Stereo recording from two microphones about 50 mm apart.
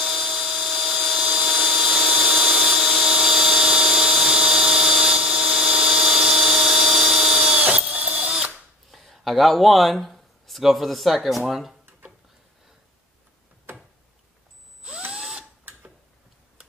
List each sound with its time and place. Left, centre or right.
0.0 s dental drill: centre
1.2 s tools: right
8.3 s drill: centre
8.9 s speech: centre